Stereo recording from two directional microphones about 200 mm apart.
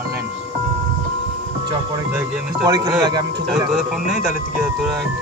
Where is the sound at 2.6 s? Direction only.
20° right (ahead or behind).